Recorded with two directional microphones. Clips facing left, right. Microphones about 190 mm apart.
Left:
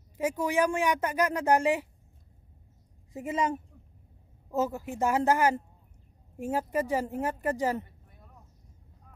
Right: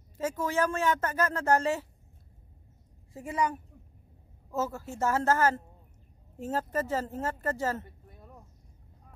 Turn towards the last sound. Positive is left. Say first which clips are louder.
# left 3 dB
turn(degrees=15)  # may be behind; listen again after turning